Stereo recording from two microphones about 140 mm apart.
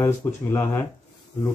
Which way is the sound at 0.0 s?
20° left (ahead or behind).